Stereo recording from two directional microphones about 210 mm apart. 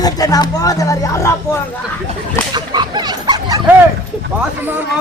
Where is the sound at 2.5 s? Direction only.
20° right (ahead or behind).